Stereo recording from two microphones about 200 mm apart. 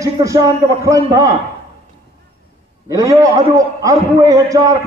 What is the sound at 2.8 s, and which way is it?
A man's voice, 15° right (ahead or behind).